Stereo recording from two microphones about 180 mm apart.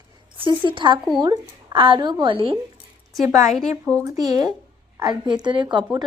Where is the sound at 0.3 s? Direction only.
30° right (ahead or behind).